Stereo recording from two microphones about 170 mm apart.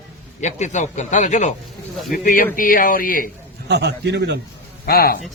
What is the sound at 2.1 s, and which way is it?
Speech, 55° left (ahead or behind).